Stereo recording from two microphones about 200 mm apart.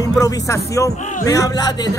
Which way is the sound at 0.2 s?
15° left (ahead or behind).